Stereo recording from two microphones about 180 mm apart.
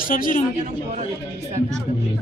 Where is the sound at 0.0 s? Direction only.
50° left (ahead or behind).